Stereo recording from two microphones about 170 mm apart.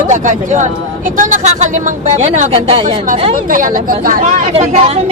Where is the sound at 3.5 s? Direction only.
50° right (ahead or behind).